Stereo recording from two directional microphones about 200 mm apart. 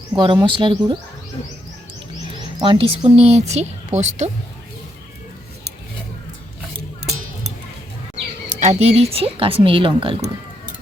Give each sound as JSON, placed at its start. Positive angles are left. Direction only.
{"t": 0.2, "sound": "speech", "side_deg": -25}
{"t": 2.3, "sound": "speech", "side_deg": -25}
{"t": 8.5, "sound": "speech", "side_deg": -35}